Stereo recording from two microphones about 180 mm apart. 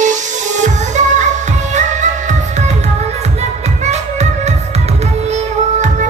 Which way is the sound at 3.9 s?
40° right (ahead or behind).